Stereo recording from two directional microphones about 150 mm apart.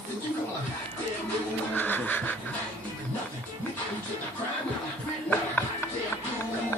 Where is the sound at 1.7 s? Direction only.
10° left (ahead or behind).